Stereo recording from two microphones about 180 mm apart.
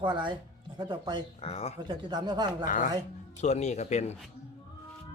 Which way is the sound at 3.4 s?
40° left (ahead or behind).